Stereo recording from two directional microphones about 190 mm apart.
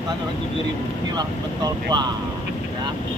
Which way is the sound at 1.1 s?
20° right (ahead or behind).